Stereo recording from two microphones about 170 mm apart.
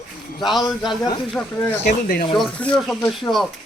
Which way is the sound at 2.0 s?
60° left (ahead or behind).